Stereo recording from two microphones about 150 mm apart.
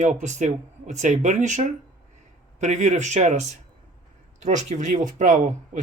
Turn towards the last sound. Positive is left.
turn(degrees=-60)  # may be behind; listen again after turning